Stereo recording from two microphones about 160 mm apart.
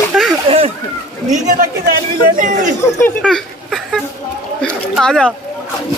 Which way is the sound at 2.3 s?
55° right (ahead or behind).